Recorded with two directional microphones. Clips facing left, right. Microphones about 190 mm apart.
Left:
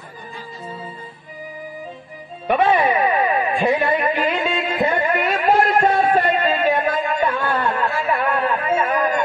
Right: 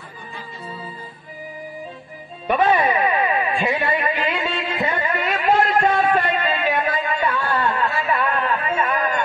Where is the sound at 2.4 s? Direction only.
20° left (ahead or behind).